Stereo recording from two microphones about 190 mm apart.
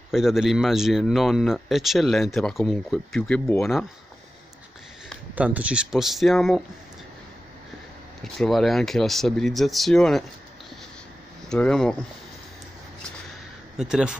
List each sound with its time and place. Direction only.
0.1 s speech: centre (ahead or behind)
5.3 s speech: 10° right (ahead or behind)
8.2 s speech: centre (ahead or behind)
11.4 s speech: 5° left (ahead or behind)
13.7 s speech: 5° right (ahead or behind)